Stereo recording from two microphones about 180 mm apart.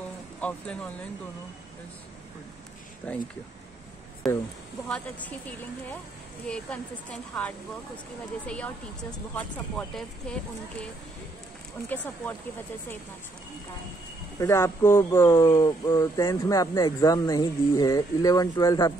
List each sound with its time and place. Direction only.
0.4 s speech: 5° left (ahead or behind)
3.0 s speech: 10° left (ahead or behind)
4.8 s speech: 5° left (ahead or behind)
6.4 s speech: 5° left (ahead or behind)
11.9 s speech: 10° left (ahead or behind)
14.4 s speech: 15° left (ahead or behind)